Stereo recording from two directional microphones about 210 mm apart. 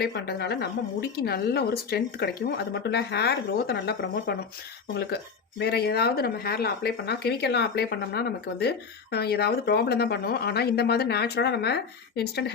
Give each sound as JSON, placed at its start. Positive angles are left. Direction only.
{"t": 0.0, "sound": "speech", "side_deg": 50}